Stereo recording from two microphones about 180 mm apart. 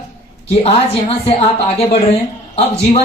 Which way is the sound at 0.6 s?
35° left (ahead or behind).